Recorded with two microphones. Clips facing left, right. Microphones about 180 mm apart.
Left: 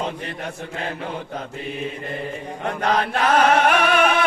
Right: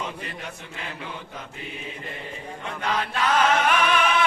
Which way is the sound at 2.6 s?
55° left (ahead or behind).